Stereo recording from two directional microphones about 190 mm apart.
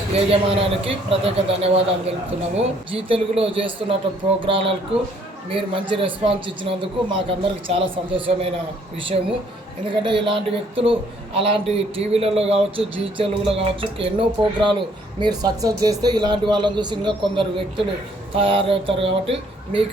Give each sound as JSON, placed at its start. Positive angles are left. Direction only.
{"t": 0.2, "sound": "a man's voice", "side_deg": -30}
{"t": 9.9, "sound": "speech", "side_deg": -25}